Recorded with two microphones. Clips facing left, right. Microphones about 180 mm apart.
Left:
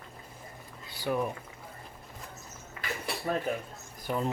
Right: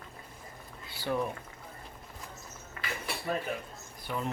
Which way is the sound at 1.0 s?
10° left (ahead or behind).